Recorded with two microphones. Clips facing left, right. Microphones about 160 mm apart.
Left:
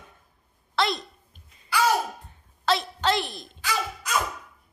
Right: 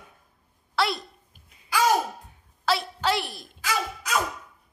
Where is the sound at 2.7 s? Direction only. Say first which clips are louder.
Left 1 dB; 5° right (ahead or behind).